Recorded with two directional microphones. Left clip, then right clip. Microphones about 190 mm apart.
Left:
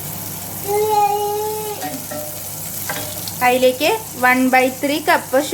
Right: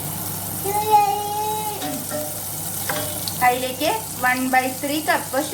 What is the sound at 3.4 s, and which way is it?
Speech, 45° left (ahead or behind).